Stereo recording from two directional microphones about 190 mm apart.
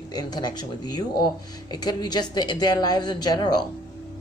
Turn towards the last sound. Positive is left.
turn(degrees=20)  # may be behind; listen again after turning